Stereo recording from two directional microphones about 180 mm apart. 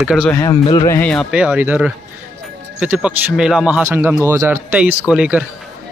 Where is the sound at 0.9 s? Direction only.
5° left (ahead or behind).